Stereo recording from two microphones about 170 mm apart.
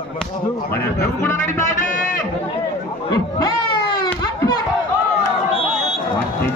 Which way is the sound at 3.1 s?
25° left (ahead or behind).